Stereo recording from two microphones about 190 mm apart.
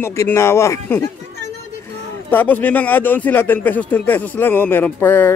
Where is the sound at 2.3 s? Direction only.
10° left (ahead or behind).